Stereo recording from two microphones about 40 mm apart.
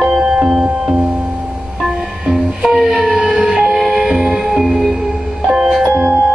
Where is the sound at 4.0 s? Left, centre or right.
Centre.